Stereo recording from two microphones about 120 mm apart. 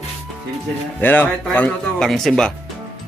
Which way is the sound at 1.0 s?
15° left (ahead or behind).